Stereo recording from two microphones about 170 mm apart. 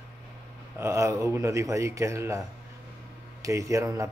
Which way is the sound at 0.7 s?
15° right (ahead or behind).